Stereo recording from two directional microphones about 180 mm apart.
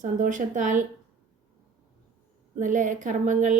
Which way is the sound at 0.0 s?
45° right (ahead or behind).